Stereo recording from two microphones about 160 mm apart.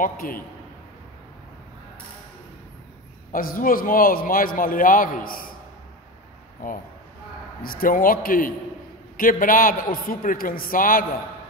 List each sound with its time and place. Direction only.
0.0 s a man's voice: 60° left (ahead or behind)
3.3 s a man's voice: 60° left (ahead or behind)
7.6 s a man's voice: 65° left (ahead or behind)